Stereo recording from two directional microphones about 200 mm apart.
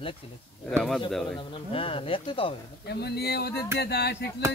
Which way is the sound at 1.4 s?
25° left (ahead or behind).